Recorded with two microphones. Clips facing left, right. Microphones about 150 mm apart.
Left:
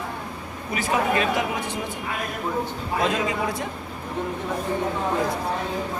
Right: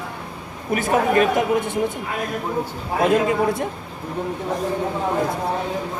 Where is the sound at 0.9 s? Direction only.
50° right (ahead or behind).